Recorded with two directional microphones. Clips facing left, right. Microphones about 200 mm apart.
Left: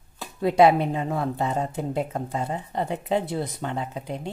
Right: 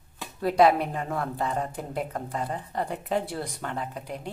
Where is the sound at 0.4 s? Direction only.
25° left (ahead or behind).